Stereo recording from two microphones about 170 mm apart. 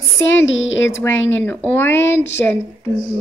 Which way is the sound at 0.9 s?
10° left (ahead or behind).